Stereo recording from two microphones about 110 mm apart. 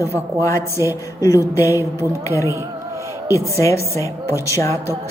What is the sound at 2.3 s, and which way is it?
Speech, 30° left (ahead or behind).